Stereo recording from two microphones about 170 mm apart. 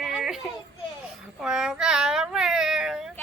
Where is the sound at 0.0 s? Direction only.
5° right (ahead or behind).